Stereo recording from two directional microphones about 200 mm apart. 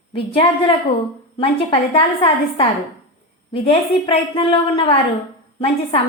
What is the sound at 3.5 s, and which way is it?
A woman's voice, 25° left (ahead or behind).